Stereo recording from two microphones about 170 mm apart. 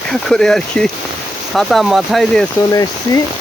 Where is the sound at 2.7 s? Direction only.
20° left (ahead or behind).